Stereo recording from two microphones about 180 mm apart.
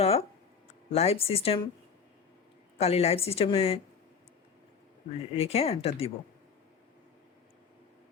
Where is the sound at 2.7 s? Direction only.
35° left (ahead or behind).